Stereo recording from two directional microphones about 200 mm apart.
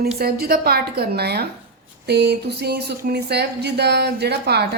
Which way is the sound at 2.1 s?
55° right (ahead or behind).